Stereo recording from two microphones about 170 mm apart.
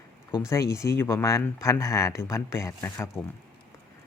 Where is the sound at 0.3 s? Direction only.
20° left (ahead or behind).